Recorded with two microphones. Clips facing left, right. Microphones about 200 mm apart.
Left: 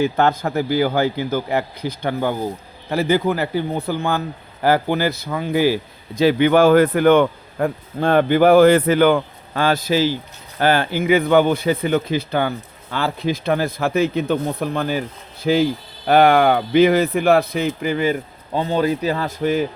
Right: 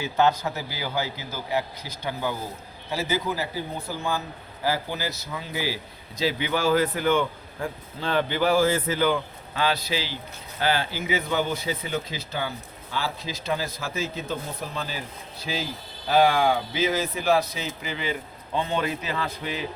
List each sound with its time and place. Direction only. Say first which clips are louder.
0.0 s speech: left 5 dB; 55° left (ahead or behind)